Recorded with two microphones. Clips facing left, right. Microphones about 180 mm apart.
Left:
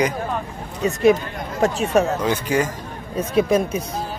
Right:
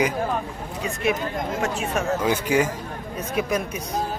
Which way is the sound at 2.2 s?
10° right (ahead or behind).